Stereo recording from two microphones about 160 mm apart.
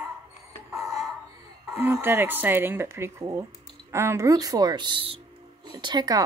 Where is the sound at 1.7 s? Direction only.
15° right (ahead or behind).